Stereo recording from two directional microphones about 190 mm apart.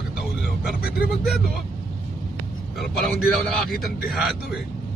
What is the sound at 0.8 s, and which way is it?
Speech, 50° left (ahead or behind).